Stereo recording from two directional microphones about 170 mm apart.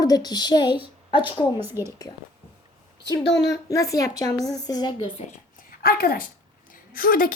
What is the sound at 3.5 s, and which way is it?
A woman's voice, 20° left (ahead or behind).